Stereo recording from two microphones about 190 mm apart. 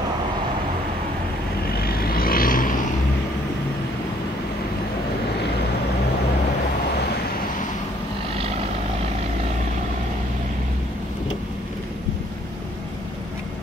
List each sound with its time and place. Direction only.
1.8 s vehicle: 55° left (ahead or behind)